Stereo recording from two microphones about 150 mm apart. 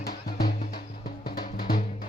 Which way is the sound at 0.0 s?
90° left.